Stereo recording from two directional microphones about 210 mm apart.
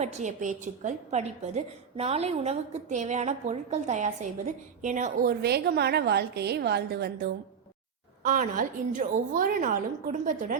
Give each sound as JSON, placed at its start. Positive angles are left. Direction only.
{"t": 0.0, "sound": "a woman's voice", "side_deg": -35}